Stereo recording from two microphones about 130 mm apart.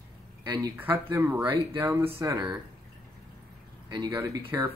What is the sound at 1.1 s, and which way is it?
Speech, 15° right (ahead or behind).